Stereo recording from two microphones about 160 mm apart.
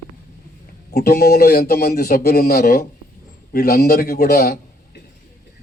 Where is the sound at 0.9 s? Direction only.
75° left (ahead or behind).